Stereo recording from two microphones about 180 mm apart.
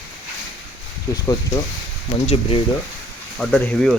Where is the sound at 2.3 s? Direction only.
30° left (ahead or behind).